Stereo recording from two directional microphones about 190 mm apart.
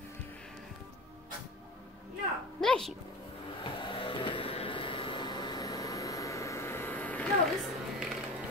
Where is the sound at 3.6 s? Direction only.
25° left (ahead or behind); by 7.3 s 10° left (ahead or behind).